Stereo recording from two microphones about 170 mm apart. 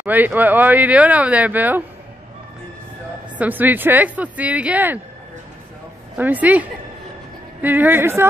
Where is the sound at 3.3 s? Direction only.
10° right (ahead or behind).